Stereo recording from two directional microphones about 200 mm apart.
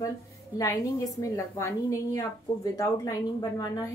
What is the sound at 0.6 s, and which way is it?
A woman's voice, 15° left (ahead or behind).